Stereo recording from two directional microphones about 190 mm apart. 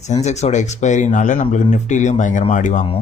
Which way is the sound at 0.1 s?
35° left (ahead or behind).